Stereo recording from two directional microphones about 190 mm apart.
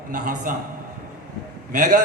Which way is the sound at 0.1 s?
45° right (ahead or behind).